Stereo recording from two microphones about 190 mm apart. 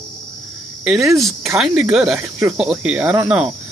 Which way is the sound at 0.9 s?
15° right (ahead or behind).